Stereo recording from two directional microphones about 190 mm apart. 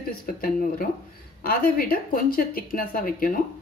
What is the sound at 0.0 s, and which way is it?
Speech, 50° left (ahead or behind).